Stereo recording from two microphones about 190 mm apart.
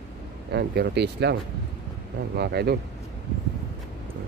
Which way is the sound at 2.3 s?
60° right (ahead or behind).